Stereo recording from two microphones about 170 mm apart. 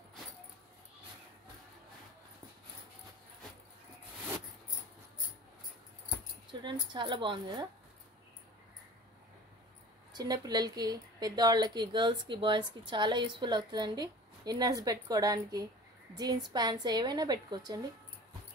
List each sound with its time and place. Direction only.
6.6 s a woman's voice: 25° right (ahead or behind)
10.1 s a woman's voice: 20° right (ahead or behind)